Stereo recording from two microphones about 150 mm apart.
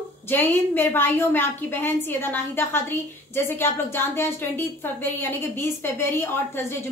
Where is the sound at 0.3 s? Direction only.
15° left (ahead or behind).